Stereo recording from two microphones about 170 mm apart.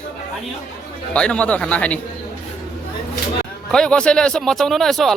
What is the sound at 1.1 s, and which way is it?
Speech, 5° left (ahead or behind).